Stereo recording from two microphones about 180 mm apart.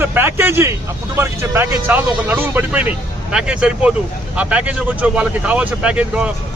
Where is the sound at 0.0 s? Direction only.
10° right (ahead or behind).